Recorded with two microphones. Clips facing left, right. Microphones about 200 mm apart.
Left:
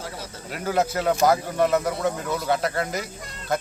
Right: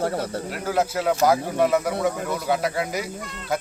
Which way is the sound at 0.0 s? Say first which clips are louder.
Right 11 dB; 60° right (ahead or behind).